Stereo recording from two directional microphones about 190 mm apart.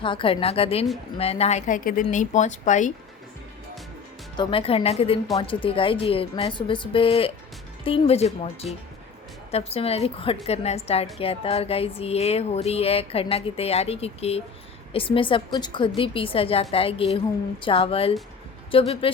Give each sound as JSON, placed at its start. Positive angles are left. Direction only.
{"t": 0.0, "sound": "a woman's voice", "side_deg": 25}
{"t": 4.4, "sound": "a woman's voice", "side_deg": 30}
{"t": 9.5, "sound": "a woman's voice", "side_deg": 35}